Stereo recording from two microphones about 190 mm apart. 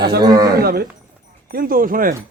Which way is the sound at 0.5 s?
55° right (ahead or behind).